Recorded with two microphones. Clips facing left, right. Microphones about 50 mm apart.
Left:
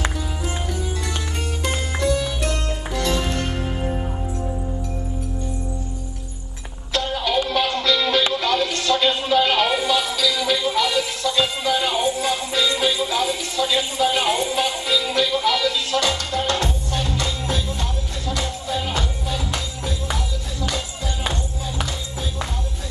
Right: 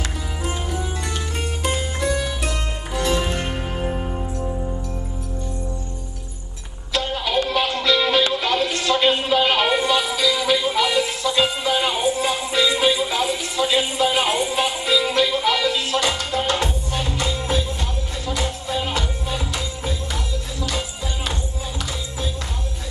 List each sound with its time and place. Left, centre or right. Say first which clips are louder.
1.8 s music: left 1 dB; centre
6.9 s music: left 1 dB; centre